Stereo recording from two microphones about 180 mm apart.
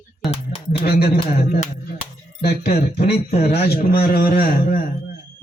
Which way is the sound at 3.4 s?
60° left (ahead or behind).